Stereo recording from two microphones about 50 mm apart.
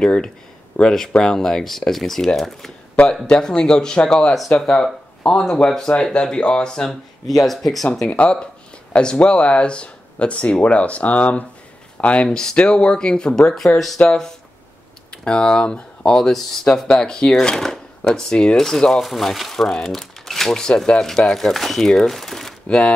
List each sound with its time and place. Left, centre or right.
0.0 s speech: centre
3.3 s speech: centre
6.9 s speech: centre
8.1 s speech: left
12.3 s speech: centre
22.7 s speech: centre